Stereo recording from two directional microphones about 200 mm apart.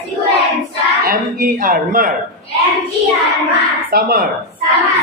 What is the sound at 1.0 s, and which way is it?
A man's voice, 45° right (ahead or behind).